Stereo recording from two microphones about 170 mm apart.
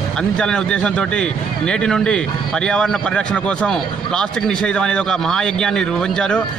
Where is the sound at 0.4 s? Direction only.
5° left (ahead or behind).